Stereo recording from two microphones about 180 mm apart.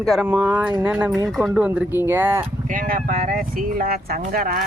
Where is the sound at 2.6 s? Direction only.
50° right (ahead or behind).